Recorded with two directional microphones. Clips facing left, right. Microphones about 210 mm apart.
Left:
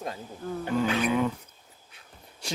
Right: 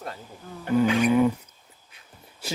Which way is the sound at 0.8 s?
10° right (ahead or behind).